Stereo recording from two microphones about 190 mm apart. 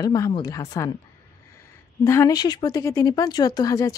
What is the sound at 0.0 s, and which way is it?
Speech, 20° left (ahead or behind).